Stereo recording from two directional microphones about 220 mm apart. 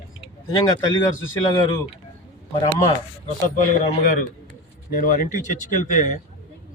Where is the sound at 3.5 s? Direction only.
35° left (ahead or behind).